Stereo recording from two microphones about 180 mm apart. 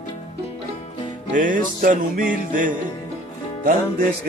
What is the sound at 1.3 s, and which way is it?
Music, 45° right (ahead or behind).